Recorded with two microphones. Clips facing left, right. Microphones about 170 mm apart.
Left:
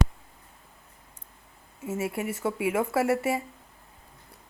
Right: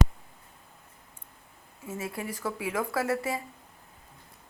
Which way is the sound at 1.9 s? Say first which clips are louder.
Left 5 dB; 25° left (ahead or behind).